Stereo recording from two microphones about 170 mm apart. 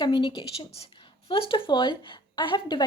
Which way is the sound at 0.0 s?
30° left (ahead or behind).